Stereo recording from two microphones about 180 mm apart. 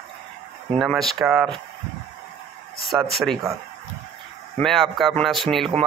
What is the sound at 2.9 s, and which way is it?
Speech, centre (ahead or behind).